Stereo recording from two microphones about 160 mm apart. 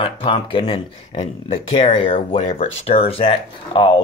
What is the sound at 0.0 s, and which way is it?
Speech, 35° left (ahead or behind).